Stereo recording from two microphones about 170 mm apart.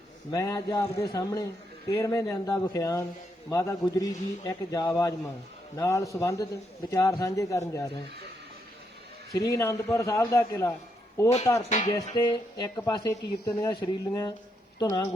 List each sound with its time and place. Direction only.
0.3 s speech: 20° left (ahead or behind)
9.3 s speech: 20° left (ahead or behind)